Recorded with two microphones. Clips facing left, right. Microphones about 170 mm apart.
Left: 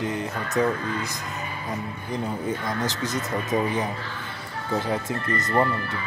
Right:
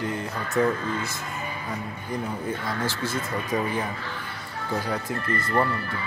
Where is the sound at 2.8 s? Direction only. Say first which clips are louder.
Left 1 dB; 20° left (ahead or behind).